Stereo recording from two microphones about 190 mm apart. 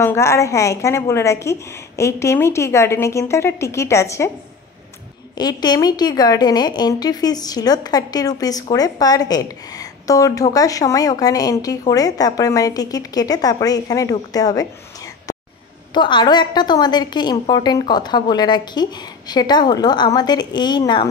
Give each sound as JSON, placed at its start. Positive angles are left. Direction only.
{"t": 0.0, "sound": "a woman's voice", "side_deg": 15}
{"t": 5.4, "sound": "a woman's voice", "side_deg": 20}
{"t": 15.9, "sound": "a woman's voice", "side_deg": 25}